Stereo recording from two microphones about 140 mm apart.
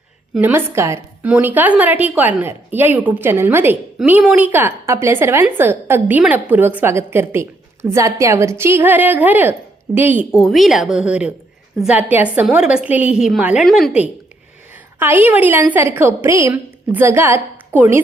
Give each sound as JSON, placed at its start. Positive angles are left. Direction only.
{"t": 0.3, "sound": "a woman's voice", "side_deg": -15}
{"t": 10.4, "sound": "a woman's voice", "side_deg": 0}
{"t": 13.7, "sound": "a woman's voice", "side_deg": 5}
{"t": 14.9, "sound": "a woman's voice", "side_deg": -15}